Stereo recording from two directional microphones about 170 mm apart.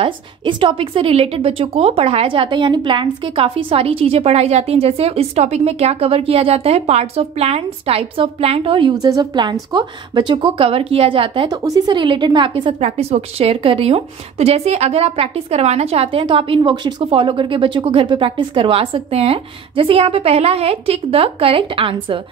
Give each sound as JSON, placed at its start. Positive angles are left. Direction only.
{"t": 0.0, "sound": "a woman's voice", "side_deg": -30}